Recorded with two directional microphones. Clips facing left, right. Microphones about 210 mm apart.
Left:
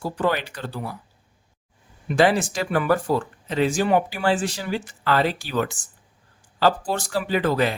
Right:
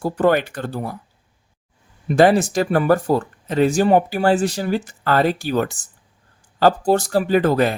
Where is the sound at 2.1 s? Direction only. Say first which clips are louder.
Right 5 dB; 45° right (ahead or behind).